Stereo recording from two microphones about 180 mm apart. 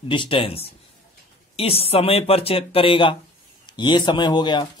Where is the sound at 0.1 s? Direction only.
30° left (ahead or behind).